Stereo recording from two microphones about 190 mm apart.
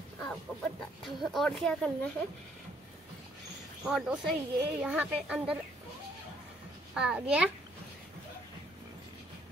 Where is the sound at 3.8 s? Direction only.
5° right (ahead or behind).